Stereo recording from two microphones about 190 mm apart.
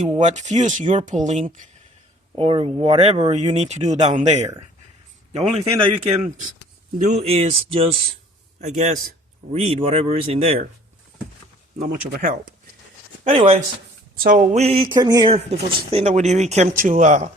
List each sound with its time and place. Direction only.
0.0 s speech: 40° right (ahead or behind)
2.3 s speech: 30° right (ahead or behind)
5.5 s speech: 35° right (ahead or behind)
11.8 s speech: 40° right (ahead or behind)
13.2 s speech: 30° right (ahead or behind)
14.2 s speech: 50° right (ahead or behind)
14.5 s speech: 30° right (ahead or behind)
15.4 s speech: 35° right (ahead or behind)